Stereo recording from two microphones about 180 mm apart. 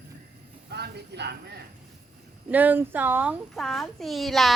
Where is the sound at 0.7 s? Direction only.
65° right (ahead or behind).